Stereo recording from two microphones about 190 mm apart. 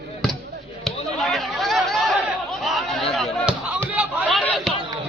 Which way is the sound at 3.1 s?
Centre (ahead or behind).